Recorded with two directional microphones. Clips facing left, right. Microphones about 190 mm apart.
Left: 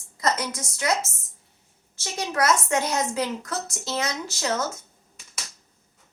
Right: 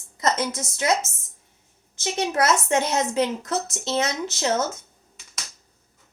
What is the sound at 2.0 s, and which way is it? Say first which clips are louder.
A woman's voice: right 3 dB; 25° right (ahead or behind).